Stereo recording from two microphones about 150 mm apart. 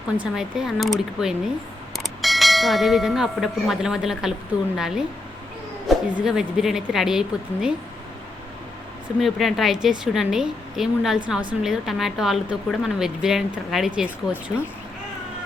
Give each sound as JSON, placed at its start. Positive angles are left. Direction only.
{"t": 0.2, "sound": "a woman's voice", "side_deg": -5}
{"t": 6.1, "sound": "a woman's voice", "side_deg": -5}
{"t": 9.2, "sound": "a woman's voice", "side_deg": 0}